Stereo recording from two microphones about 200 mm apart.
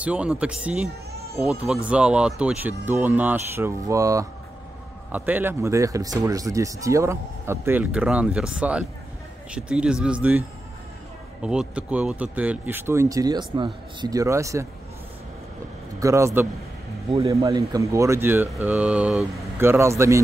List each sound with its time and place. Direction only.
0.0 s mantra: 5° right (ahead or behind)
1.4 s speech: 5° right (ahead or behind)
9.5 s mantra: 5° right (ahead or behind)
11.4 s speech: 5° right (ahead or behind)
16.0 s speech: 15° right (ahead or behind)
18.5 s mantra: 10° right (ahead or behind)
19.6 s speech: 15° right (ahead or behind)